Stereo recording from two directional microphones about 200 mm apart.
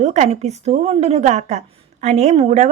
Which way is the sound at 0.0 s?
35° right (ahead or behind).